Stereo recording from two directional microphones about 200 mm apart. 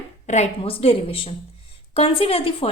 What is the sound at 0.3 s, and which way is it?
A woman's voice, 35° left (ahead or behind).